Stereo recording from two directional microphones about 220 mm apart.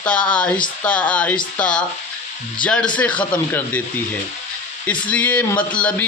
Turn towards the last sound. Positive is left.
turn(degrees=5)  # may be behind; listen again after turning